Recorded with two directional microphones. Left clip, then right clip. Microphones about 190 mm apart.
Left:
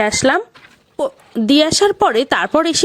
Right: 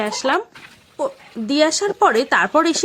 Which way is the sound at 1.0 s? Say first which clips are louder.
Left 4 dB; 50° left (ahead or behind).